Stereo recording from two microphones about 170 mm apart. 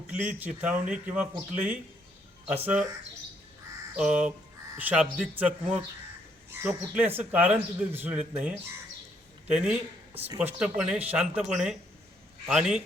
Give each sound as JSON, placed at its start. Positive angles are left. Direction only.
{"t": 0.1, "sound": "speech", "side_deg": -10}
{"t": 3.9, "sound": "speech", "side_deg": -5}